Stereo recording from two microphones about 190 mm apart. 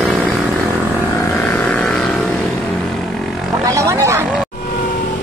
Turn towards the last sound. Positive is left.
turn(degrees=-15)  # may be behind; listen again after turning